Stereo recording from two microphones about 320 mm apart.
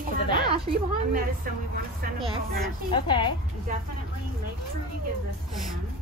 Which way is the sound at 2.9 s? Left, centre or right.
Centre.